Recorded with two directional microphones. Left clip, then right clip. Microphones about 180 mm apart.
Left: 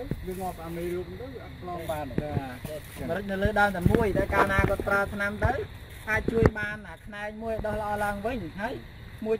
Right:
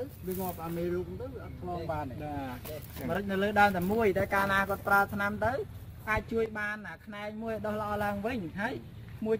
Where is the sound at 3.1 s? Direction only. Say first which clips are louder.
Left 2 dB; 30° left (ahead or behind).